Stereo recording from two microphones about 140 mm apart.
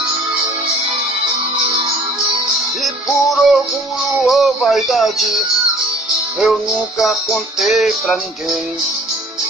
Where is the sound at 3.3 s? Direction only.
Centre (ahead or behind).